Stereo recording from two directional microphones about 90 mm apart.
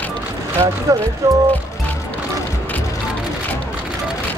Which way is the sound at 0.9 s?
35° right (ahead or behind).